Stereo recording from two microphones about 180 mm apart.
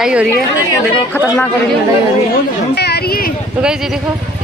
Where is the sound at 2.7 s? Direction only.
65° left (ahead or behind).